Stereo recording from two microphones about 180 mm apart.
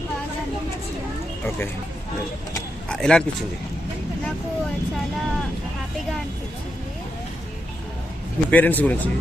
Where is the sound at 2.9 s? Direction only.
5° left (ahead or behind).